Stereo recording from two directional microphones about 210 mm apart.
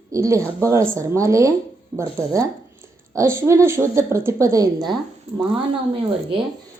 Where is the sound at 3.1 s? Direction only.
15° right (ahead or behind).